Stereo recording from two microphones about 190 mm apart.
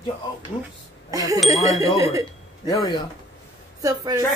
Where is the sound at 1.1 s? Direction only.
20° right (ahead or behind).